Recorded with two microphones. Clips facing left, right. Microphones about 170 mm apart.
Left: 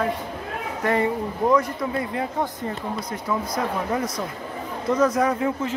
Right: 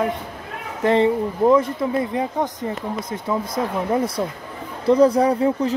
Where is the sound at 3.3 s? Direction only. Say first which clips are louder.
Right 2 dB; 20° right (ahead or behind).